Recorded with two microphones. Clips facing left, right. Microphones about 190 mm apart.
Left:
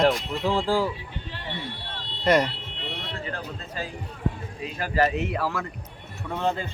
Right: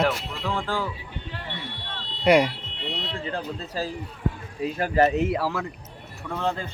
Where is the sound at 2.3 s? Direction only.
10° right (ahead or behind).